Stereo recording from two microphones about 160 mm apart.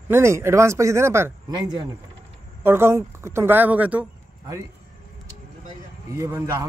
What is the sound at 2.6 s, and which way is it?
Speech, 15° right (ahead or behind).